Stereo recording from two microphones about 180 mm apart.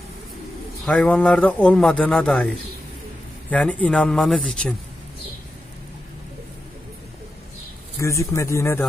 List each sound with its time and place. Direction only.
0.8 s a man's voice: 5° left (ahead or behind)
8.0 s a man's voice: 15° left (ahead or behind)